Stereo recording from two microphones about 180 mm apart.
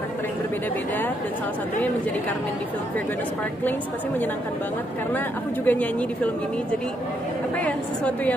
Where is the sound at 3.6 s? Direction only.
10° left (ahead or behind).